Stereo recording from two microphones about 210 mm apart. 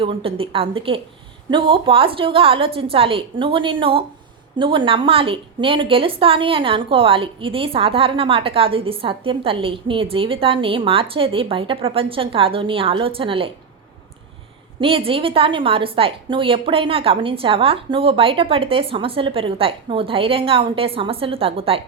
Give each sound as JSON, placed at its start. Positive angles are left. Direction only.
{"t": 0.0, "sound": "a woman's voice", "side_deg": -25}
{"t": 14.8, "sound": "a woman's voice", "side_deg": -25}